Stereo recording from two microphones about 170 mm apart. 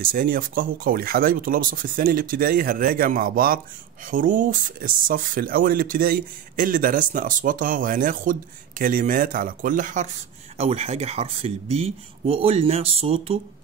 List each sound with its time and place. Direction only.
0.0 s speech: 55° right (ahead or behind)
10.6 s speech: 35° right (ahead or behind)